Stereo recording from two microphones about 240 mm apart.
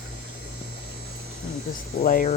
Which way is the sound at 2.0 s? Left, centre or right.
Left.